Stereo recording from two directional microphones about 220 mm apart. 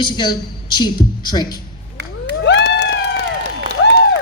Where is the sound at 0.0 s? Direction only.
20° left (ahead or behind).